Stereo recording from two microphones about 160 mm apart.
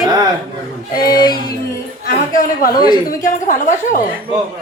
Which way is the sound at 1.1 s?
25° left (ahead or behind).